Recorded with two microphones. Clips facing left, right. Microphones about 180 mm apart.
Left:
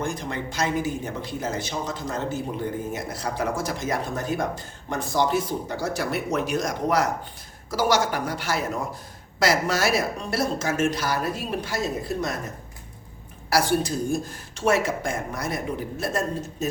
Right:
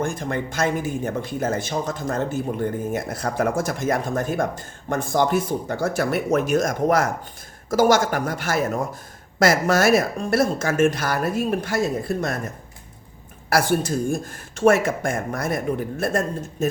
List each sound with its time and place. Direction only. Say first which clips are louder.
0.0 s speech: right 4 dB; 50° right (ahead or behind)
13.5 s speech: right 2 dB; 50° right (ahead or behind)